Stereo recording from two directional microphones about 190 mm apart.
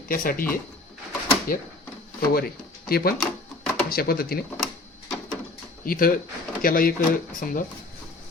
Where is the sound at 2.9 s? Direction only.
50° left (ahead or behind).